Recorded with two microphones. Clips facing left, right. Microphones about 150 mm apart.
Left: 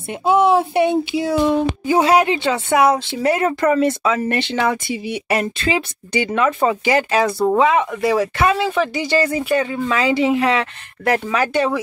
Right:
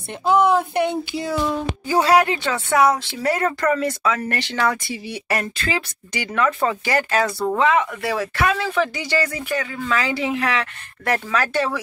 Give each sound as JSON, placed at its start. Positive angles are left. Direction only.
{"t": 0.1, "sound": "speech", "side_deg": 25}